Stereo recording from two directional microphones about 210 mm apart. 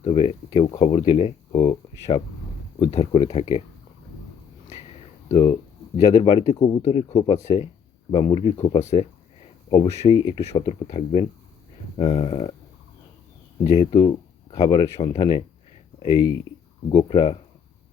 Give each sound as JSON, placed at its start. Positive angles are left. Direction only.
{"t": 0.0, "sound": "speech", "side_deg": 30}
{"t": 5.3, "sound": "speech", "side_deg": 25}
{"t": 7.3, "sound": "speech", "side_deg": 15}
{"t": 8.1, "sound": "speech", "side_deg": 25}
{"t": 13.7, "sound": "speech", "side_deg": 20}